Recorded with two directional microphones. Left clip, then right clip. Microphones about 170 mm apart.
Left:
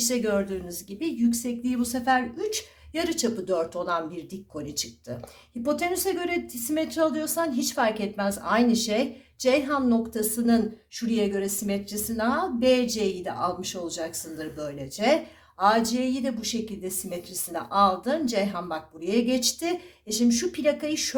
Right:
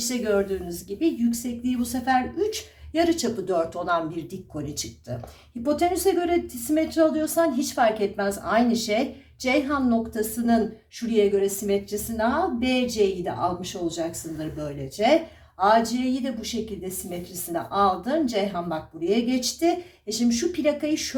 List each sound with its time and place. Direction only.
0.1 s a woman's voice: 35° left (ahead or behind)